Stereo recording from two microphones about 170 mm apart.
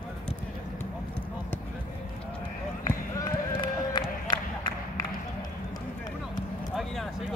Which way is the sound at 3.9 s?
25° left (ahead or behind).